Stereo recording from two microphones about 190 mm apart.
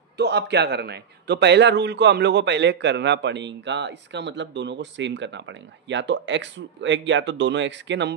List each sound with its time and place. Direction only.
0.2 s a man's voice: 65° right (ahead or behind)